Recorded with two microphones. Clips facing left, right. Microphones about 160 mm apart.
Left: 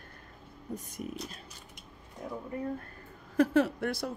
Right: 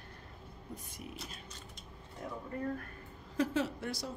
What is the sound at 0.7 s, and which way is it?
Speech, 45° left (ahead or behind).